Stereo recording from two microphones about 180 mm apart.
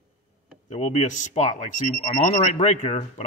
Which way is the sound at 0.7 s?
40° left (ahead or behind).